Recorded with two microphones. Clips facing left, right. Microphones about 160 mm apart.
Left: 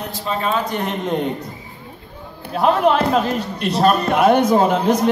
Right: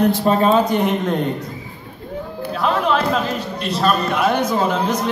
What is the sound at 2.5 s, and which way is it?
A man's voice, 45° left (ahead or behind).